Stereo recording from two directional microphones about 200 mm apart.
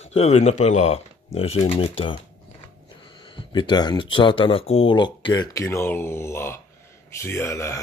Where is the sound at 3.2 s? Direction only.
25° left (ahead or behind).